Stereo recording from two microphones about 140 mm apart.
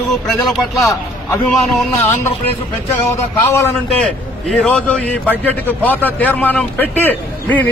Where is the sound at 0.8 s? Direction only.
25° left (ahead or behind).